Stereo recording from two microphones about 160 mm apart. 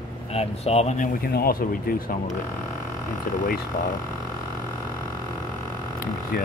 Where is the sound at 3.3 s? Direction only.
60° left (ahead or behind).